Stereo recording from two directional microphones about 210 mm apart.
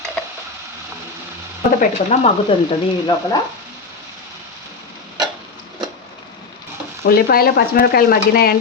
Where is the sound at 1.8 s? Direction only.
35° left (ahead or behind).